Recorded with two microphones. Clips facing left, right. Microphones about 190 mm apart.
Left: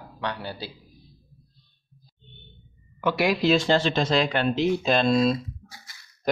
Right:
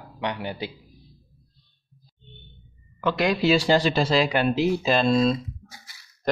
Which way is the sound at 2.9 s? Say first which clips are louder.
Even; 10° left (ahead or behind).